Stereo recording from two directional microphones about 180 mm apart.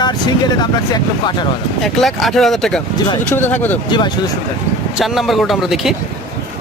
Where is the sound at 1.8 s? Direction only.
Centre (ahead or behind).